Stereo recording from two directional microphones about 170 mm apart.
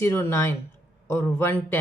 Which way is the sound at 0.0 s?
15° left (ahead or behind).